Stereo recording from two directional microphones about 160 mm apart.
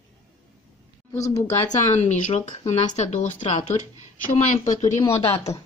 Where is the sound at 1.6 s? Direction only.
45° left (ahead or behind).